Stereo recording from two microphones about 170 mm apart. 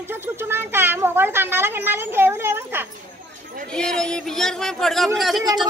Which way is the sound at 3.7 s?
5° left (ahead or behind).